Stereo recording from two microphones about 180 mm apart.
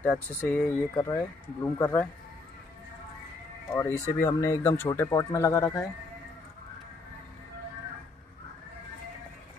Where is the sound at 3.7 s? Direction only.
15° left (ahead or behind).